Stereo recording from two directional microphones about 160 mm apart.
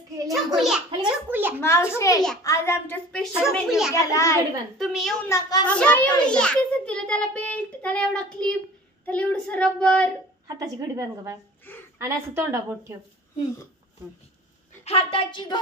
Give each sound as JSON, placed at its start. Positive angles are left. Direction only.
{"t": 0.6, "sound": "a child's voice", "side_deg": -5}
{"t": 1.6, "sound": "a child's voice", "side_deg": 15}
{"t": 3.1, "sound": "speech", "side_deg": 5}
{"t": 3.9, "sound": "a child's voice", "side_deg": 20}
{"t": 4.7, "sound": "speech", "side_deg": 0}
{"t": 5.3, "sound": "a child's voice", "side_deg": 25}
{"t": 5.7, "sound": "a child's voice", "side_deg": 10}
{"t": 10.6, "sound": "a woman's voice", "side_deg": -20}
{"t": 11.7, "sound": "a woman's voice", "side_deg": 10}
{"t": 12.0, "sound": "a woman's voice", "side_deg": -15}
{"t": 14.9, "sound": "a woman's voice", "side_deg": 35}